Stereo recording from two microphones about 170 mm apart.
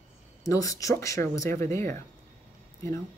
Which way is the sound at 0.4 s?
20° left (ahead or behind).